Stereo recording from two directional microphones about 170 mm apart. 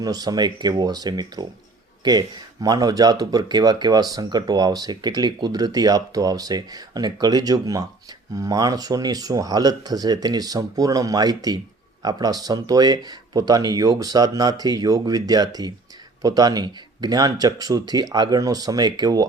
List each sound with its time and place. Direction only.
0.0 s speech: 20° right (ahead or behind)